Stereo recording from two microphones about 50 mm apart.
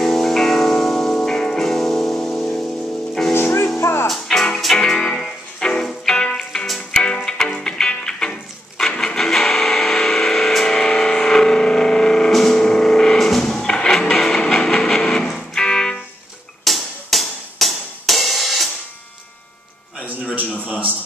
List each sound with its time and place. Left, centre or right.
0.0 s music: centre
3.3 s music: left
4.1 s music: centre
16.6 s music: centre
20.3 s a sound: right